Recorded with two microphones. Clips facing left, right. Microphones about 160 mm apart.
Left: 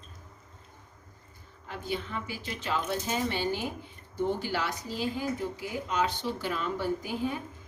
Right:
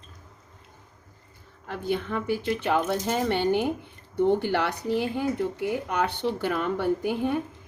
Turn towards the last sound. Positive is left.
turn(degrees=-60)  # may be behind; listen again after turning